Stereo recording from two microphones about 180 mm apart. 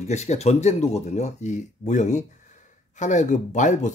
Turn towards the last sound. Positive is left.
turn(degrees=45)  # may be behind; listen again after turning